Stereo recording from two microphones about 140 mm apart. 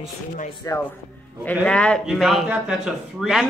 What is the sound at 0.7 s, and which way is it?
Speech, 20° left (ahead or behind).